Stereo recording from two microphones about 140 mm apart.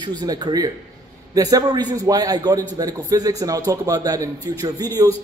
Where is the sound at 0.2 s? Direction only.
30° right (ahead or behind).